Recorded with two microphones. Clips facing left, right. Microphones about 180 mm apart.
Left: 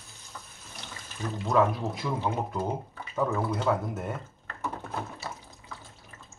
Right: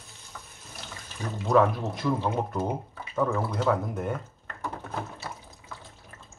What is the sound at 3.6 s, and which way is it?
Speech, 5° left (ahead or behind).